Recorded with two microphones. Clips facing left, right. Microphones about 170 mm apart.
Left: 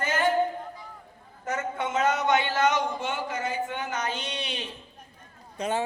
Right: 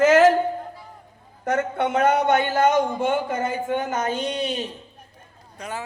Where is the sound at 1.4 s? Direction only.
65° right (ahead or behind); by 4.7 s 45° right (ahead or behind).